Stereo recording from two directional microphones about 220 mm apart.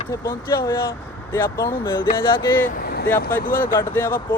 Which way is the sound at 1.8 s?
20° left (ahead or behind).